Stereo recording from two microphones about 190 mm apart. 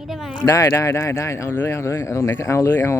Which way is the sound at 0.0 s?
Centre (ahead or behind).